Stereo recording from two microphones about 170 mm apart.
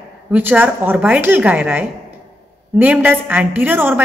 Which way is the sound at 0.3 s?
10° right (ahead or behind).